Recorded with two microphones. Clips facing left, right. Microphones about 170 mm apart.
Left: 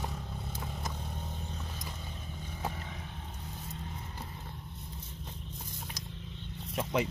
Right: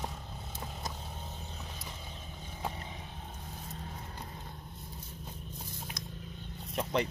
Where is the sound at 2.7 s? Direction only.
20° right (ahead or behind).